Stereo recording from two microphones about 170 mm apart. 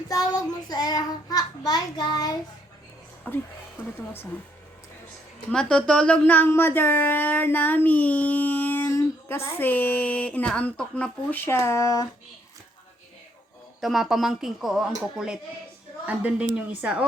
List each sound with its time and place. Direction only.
0.1 s a child's voice: 20° left (ahead or behind)
3.3 s speech: 10° left (ahead or behind)
5.5 s speech: 5° left (ahead or behind)
13.8 s a woman's voice: centre (ahead or behind)